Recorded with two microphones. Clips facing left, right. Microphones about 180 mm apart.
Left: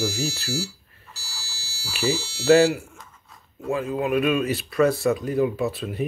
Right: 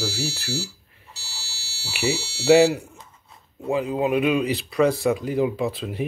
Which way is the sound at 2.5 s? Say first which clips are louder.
Right 1 dB; 20° right (ahead or behind).